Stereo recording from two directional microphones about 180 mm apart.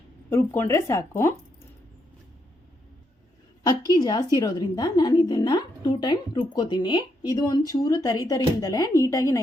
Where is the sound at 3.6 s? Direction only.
20° left (ahead or behind).